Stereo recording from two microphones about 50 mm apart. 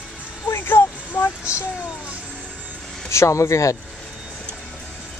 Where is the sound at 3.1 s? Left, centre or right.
Left.